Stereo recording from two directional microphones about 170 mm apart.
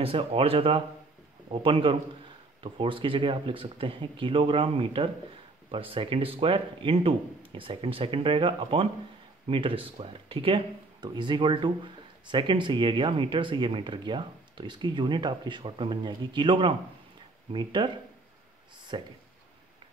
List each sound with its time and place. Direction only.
0.0 s speech: 35° right (ahead or behind)